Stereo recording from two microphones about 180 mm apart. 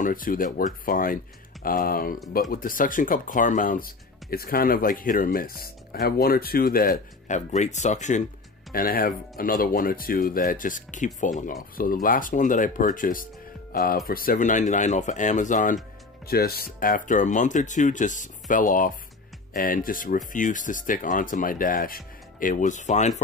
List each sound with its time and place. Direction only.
0.0 s speech: 50° left (ahead or behind)
8.7 s speech: 55° left (ahead or behind)
16.3 s speech: 60° left (ahead or behind); by 23.2 s 40° left (ahead or behind)